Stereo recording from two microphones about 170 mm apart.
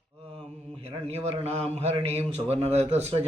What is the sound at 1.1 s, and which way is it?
Mantra, 35° right (ahead or behind).